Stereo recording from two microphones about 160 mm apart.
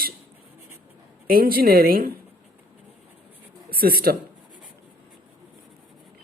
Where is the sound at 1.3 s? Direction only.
65° right (ahead or behind).